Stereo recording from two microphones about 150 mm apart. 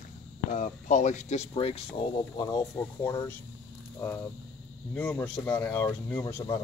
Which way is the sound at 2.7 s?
15° left (ahead or behind).